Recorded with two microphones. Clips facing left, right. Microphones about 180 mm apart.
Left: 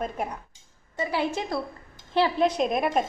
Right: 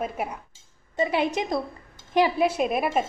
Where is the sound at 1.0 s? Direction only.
20° right (ahead or behind).